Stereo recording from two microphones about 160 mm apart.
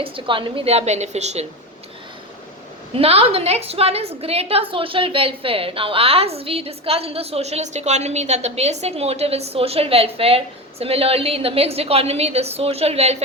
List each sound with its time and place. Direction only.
0.0 s a woman's voice: 30° right (ahead or behind)
2.9 s a woman's voice: 40° right (ahead or behind)